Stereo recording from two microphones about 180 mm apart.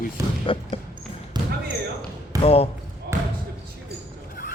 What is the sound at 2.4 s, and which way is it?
Speech, 35° left (ahead or behind).